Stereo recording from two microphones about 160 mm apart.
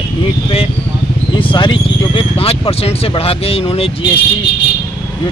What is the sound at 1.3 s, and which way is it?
Speech, 30° left (ahead or behind).